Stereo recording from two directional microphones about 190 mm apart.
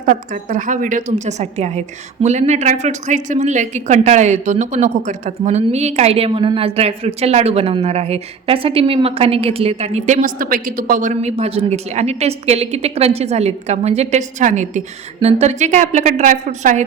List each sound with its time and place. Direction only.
0.0 s a woman's voice: 45° right (ahead or behind)